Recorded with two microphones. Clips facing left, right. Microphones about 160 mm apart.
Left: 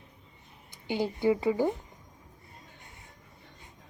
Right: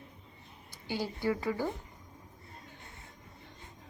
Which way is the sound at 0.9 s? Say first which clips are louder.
Left 6 dB; 20° left (ahead or behind).